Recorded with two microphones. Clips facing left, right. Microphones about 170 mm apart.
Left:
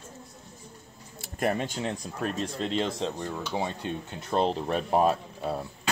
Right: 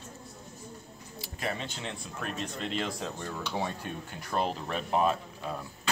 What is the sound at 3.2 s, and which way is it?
Speech, 20° left (ahead or behind).